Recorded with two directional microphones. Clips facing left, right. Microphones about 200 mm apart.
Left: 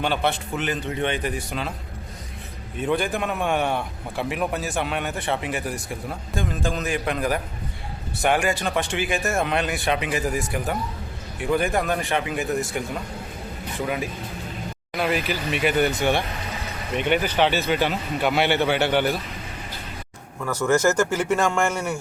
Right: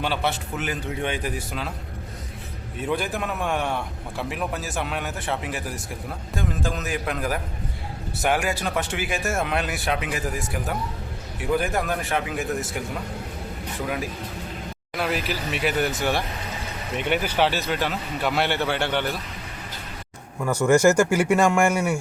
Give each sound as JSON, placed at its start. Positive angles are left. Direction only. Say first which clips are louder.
{"t": 0.0, "sound": "a man's voice", "louder": "left 2 dB", "side_deg": -5}
{"t": 2.8, "sound": "a man's voice", "louder": "left 3 dB", "side_deg": -5}
{"t": 13.8, "sound": "a man's voice", "louder": "left 1 dB", "side_deg": 0}
{"t": 20.4, "sound": "speech", "louder": "right 3 dB", "side_deg": -15}